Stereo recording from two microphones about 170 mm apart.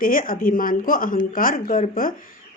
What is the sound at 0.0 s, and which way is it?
Speech, 55° left (ahead or behind).